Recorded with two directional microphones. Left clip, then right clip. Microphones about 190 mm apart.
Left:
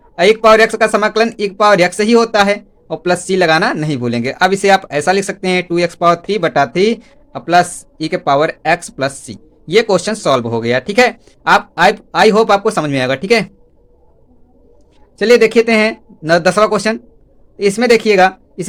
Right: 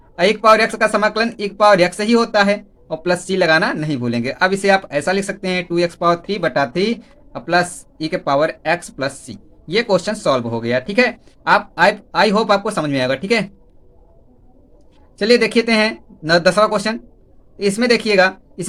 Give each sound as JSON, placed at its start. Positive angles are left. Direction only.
{"t": 0.2, "sound": "speech", "side_deg": 35}
{"t": 15.2, "sound": "speech", "side_deg": 30}